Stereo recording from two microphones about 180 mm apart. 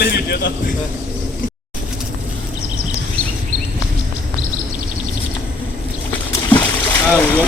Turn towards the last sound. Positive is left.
turn(degrees=10)  # may be behind; listen again after turning